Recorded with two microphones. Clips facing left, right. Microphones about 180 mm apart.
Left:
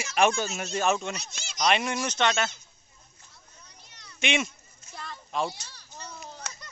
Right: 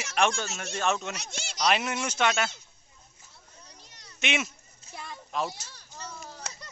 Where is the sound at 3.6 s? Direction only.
35° right (ahead or behind).